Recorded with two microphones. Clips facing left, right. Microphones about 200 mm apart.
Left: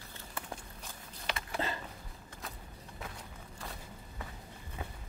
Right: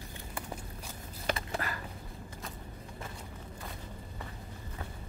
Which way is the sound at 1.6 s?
25° left (ahead or behind).